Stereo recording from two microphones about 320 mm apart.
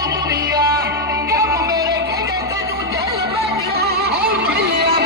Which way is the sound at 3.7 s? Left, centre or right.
Right.